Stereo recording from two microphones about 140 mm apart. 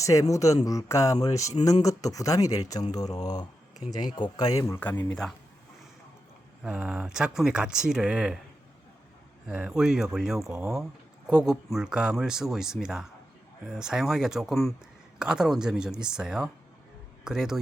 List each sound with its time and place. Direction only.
0.0 s speech: 20° left (ahead or behind)
4.8 s speech: 10° left (ahead or behind)
6.7 s speech: 10° right (ahead or behind)
9.5 s speech: 5° right (ahead or behind)